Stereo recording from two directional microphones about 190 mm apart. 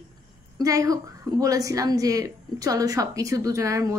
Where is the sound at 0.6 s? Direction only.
15° right (ahead or behind).